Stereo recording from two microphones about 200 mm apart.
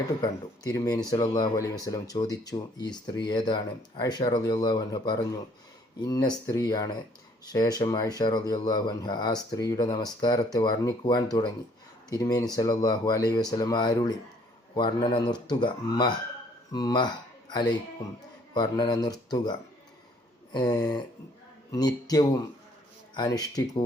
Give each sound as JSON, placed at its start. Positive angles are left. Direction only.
{"t": 0.2, "sound": "speech", "side_deg": 20}